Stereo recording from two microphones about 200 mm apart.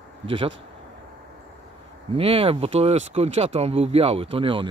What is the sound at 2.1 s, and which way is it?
Speech, 30° right (ahead or behind).